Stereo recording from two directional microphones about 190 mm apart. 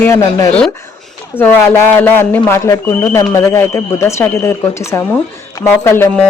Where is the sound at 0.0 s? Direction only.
15° left (ahead or behind).